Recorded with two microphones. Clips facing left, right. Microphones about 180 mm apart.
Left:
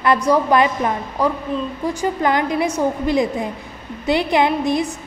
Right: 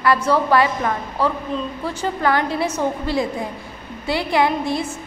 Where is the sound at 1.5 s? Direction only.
5° left (ahead or behind).